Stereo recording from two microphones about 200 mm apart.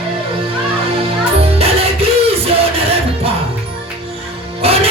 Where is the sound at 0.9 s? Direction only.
30° right (ahead or behind).